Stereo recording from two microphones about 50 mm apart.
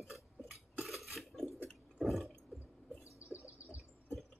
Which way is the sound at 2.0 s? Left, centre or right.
Centre.